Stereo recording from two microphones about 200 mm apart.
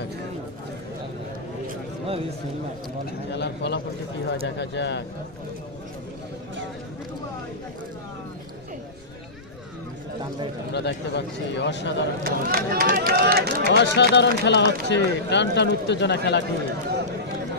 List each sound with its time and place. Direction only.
3.3 s speech: 60° left (ahead or behind)
10.7 s speech: 60° left (ahead or behind)
12.2 s speech: 45° right (ahead or behind)
13.7 s speech: 60° left (ahead or behind)